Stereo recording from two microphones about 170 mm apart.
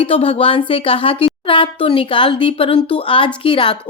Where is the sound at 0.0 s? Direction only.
30° left (ahead or behind).